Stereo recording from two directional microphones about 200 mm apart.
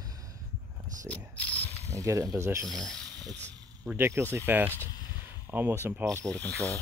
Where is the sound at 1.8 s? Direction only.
15° right (ahead or behind).